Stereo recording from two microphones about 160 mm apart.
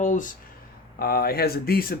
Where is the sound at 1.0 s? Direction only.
70° left (ahead or behind).